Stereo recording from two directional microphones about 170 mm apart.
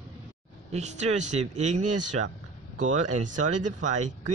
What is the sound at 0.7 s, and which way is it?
Speech, 40° right (ahead or behind).